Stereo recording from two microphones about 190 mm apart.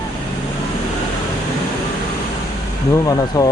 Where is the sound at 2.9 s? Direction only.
20° left (ahead or behind).